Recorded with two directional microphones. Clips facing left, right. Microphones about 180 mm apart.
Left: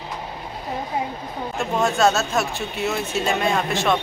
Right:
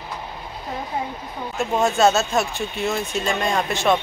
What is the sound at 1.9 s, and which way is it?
Speech, centre (ahead or behind).